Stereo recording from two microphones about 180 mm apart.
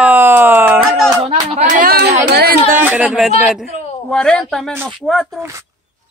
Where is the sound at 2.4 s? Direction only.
55° right (ahead or behind).